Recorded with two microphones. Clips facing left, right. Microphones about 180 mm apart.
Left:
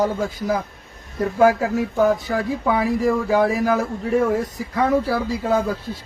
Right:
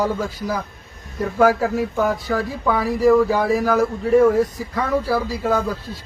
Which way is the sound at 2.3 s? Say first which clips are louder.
Even; 20° left (ahead or behind).